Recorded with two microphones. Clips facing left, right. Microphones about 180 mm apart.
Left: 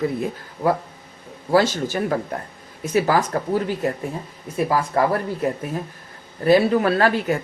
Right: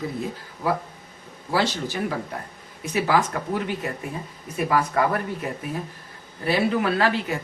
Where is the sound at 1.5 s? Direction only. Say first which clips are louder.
Left 6 dB; 45° left (ahead or behind).